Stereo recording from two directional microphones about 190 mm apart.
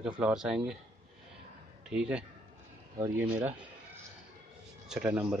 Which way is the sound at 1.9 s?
5° right (ahead or behind).